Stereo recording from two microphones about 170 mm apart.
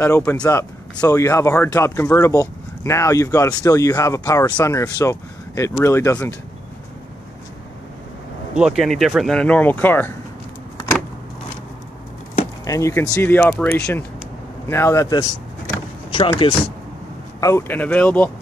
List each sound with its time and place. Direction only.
0.0 s speech: 10° left (ahead or behind)
8.5 s speech: 5° right (ahead or behind)
12.6 s speech: 20° left (ahead or behind)
13.4 s speech: 5° left (ahead or behind)
14.7 s speech: 15° left (ahead or behind)
16.1 s speech: 30° left (ahead or behind)
17.4 s speech: 15° left (ahead or behind)